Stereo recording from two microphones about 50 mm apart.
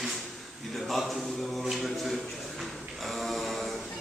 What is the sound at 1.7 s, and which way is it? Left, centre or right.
Speech, centre.